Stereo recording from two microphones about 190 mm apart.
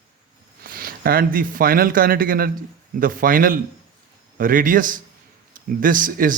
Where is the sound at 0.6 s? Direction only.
50° right (ahead or behind).